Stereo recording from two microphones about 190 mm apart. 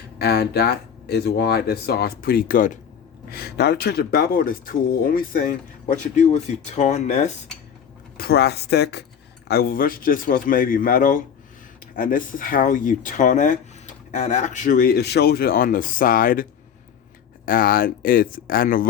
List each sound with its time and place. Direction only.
0.2 s speech: 60° left (ahead or behind); by 7.3 s 35° left (ahead or behind)
8.2 s speech: 55° left (ahead or behind)